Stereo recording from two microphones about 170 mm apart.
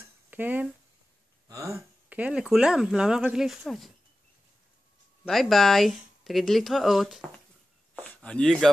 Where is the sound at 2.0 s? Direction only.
10° right (ahead or behind).